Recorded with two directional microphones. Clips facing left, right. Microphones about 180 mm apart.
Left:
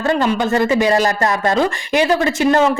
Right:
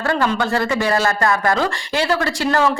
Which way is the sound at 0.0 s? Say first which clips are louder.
Left 3 dB; 20° left (ahead or behind).